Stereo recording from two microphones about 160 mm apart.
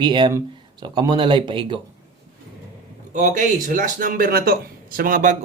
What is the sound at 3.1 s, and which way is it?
Speech, 50° right (ahead or behind).